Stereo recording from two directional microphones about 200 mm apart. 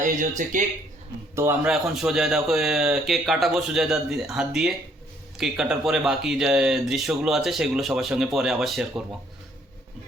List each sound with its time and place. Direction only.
0.0 s speech: 40° right (ahead or behind)
1.4 s speech: 10° right (ahead or behind)